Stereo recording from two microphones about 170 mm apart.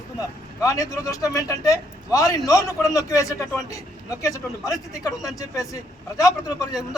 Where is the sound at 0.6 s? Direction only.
20° left (ahead or behind).